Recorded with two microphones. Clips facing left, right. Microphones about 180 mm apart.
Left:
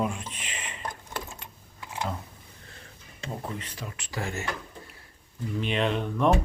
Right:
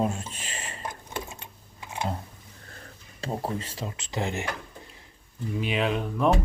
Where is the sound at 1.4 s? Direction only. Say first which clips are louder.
Even; 25° right (ahead or behind).